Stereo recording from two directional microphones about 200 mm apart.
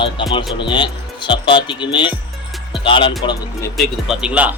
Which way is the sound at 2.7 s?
25° left (ahead or behind).